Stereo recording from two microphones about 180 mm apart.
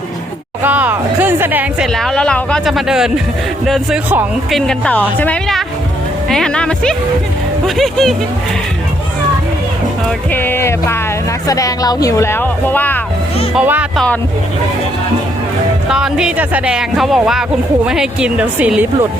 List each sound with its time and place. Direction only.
0.6 s music: 10° right (ahead or behind)
1.9 s speech: 5° left (ahead or behind)
4.5 s speech: 5° left (ahead or behind)
10.3 s speech: 10° left (ahead or behind)
13.6 s speech: 5° right (ahead or behind)
15.9 s speech: 5° right (ahead or behind)